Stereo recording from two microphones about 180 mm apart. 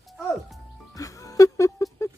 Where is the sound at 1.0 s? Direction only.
20° left (ahead or behind).